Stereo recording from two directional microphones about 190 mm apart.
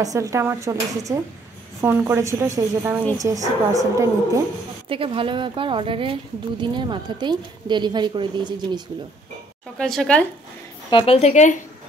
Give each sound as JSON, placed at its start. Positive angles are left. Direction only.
{"t": 0.0, "sound": "speech", "side_deg": -15}
{"t": 4.8, "sound": "speech", "side_deg": -30}
{"t": 9.8, "sound": "speech", "side_deg": 5}
{"t": 10.9, "sound": "a woman's voice", "side_deg": 30}